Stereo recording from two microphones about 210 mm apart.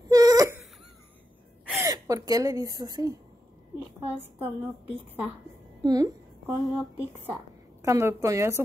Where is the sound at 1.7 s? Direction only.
15° right (ahead or behind).